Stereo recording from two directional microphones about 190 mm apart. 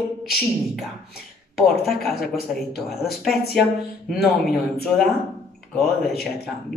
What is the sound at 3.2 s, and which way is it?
Speech, centre (ahead or behind).